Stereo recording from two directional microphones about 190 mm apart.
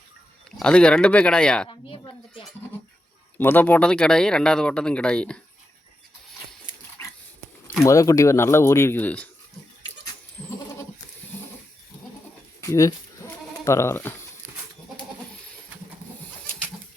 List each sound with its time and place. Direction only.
0.6 s speech: 5° left (ahead or behind)
1.6 s a sound: 25° left (ahead or behind)
3.3 s speech: 10° left (ahead or behind)
7.9 s speech: 15° left (ahead or behind)
12.6 s bleat: 15° left (ahead or behind)